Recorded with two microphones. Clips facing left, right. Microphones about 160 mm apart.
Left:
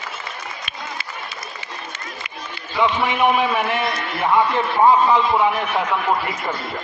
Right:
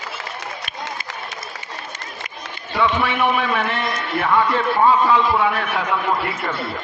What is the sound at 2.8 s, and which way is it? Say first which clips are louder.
A man's voice: left 1 dB; 15° left (ahead or behind).